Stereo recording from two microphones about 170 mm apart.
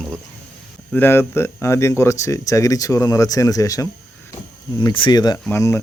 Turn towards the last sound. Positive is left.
turn(degrees=15)  # may be behind; listen again after turning